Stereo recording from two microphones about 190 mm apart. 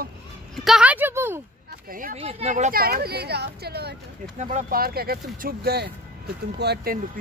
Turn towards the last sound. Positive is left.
turn(degrees=-55)  # may be behind; listen again after turning